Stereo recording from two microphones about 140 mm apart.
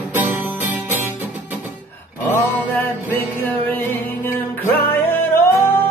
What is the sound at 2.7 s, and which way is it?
Music, 15° left (ahead or behind).